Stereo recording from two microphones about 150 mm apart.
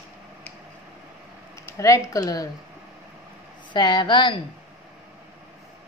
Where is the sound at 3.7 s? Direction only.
30° left (ahead or behind).